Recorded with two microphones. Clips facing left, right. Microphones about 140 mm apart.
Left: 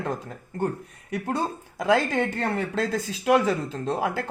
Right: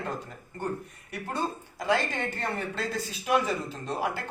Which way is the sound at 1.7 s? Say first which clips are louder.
Left 6 dB; 90° left.